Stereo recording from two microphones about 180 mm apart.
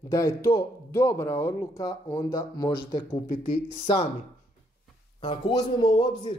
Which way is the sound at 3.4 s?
30° left (ahead or behind).